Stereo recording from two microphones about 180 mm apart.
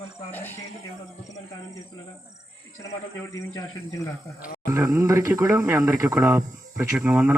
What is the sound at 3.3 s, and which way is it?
Speech, 15° left (ahead or behind).